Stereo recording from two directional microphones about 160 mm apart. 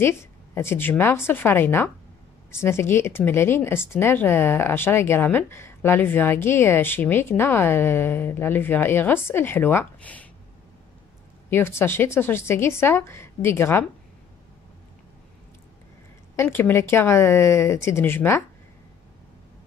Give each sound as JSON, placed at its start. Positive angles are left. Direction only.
{"t": 0.0, "sound": "speech", "side_deg": 15}
{"t": 11.5, "sound": "speech", "side_deg": 15}
{"t": 16.3, "sound": "speech", "side_deg": 15}